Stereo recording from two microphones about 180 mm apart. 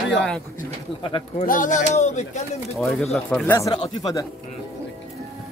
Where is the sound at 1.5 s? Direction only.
45° left (ahead or behind).